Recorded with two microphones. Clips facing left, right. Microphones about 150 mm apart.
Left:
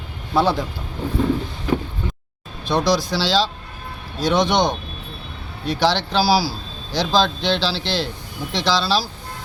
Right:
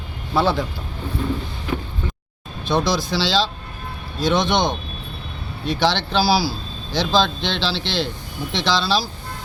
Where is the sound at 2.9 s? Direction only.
10° left (ahead or behind).